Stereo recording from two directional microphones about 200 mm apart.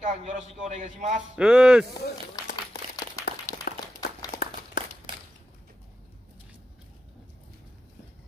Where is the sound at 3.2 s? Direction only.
45° left (ahead or behind).